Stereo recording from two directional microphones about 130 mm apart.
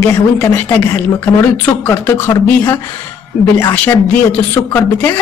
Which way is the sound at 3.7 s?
10° left (ahead or behind).